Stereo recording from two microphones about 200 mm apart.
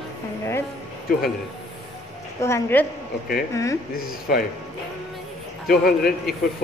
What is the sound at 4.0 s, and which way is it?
Speech, 50° left (ahead or behind).